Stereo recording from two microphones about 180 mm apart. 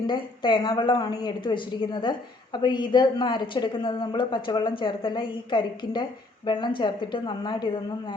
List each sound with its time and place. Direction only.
0.1 s a woman's voice: 25° left (ahead or behind)